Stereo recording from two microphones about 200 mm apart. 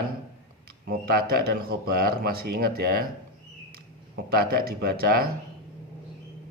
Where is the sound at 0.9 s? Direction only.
50° right (ahead or behind).